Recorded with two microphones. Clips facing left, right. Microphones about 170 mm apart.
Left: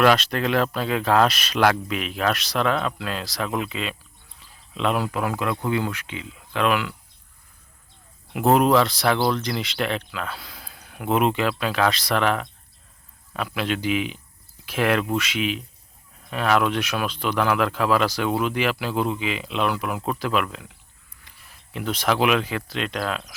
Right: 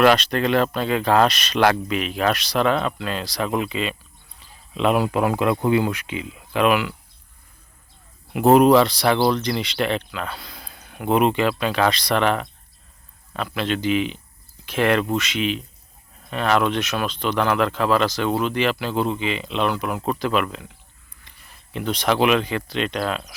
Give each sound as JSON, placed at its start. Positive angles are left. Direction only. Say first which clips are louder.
{"t": 0.0, "sound": "speech", "louder": "right 2 dB", "side_deg": 0}
{"t": 4.4, "sound": "a sound", "louder": "right 4 dB", "side_deg": 0}
{"t": 4.9, "sound": "speech", "louder": "right 5 dB", "side_deg": -20}
{"t": 8.3, "sound": "speech", "louder": "right 4 dB", "side_deg": 0}